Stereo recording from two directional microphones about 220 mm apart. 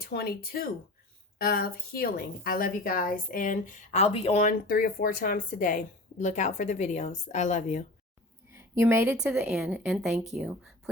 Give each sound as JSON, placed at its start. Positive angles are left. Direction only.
{"t": 0.0, "sound": "a woman's voice", "side_deg": 45}
{"t": 8.4, "sound": "a woman's voice", "side_deg": -10}